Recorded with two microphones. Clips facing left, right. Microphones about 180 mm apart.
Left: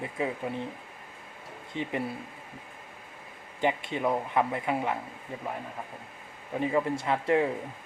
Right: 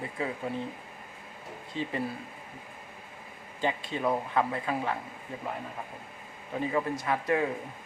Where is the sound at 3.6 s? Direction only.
20° left (ahead or behind).